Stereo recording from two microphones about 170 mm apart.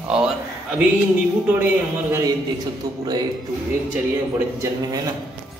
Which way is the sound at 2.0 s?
15° right (ahead or behind).